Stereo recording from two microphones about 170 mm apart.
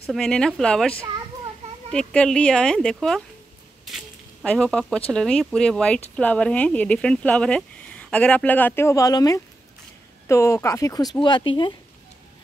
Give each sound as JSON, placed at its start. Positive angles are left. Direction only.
{"t": 0.1, "sound": "speech", "side_deg": 5}